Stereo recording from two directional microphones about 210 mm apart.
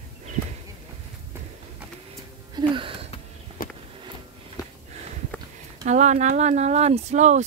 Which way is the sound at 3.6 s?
40° left (ahead or behind).